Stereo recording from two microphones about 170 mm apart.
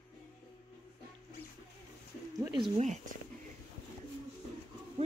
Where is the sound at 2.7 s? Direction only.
45° right (ahead or behind).